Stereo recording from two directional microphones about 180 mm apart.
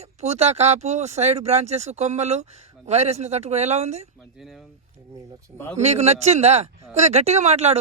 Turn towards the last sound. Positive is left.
turn(degrees=-35)  # may be behind; listen again after turning